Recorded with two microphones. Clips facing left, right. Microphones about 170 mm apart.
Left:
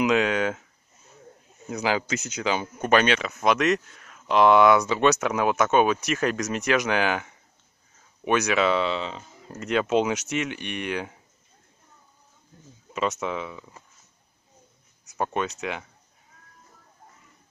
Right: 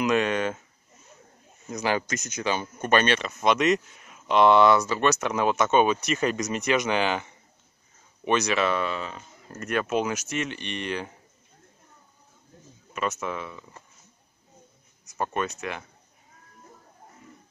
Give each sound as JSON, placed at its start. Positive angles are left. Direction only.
{"t": 0.0, "sound": "speech", "side_deg": 10}
{"t": 1.7, "sound": "speech", "side_deg": 5}
{"t": 4.8, "sound": "speech", "side_deg": 15}
{"t": 5.2, "sound": "speech", "side_deg": 5}
{"t": 8.3, "sound": "speech", "side_deg": 10}
{"t": 13.2, "sound": "speech", "side_deg": 15}
{"t": 15.1, "sound": "speech", "side_deg": 15}